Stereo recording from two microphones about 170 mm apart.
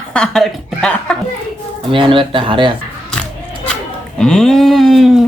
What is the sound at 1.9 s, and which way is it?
Speech, 30° right (ahead or behind).